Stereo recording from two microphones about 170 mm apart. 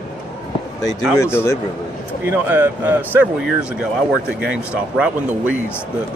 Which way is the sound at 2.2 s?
10° right (ahead or behind).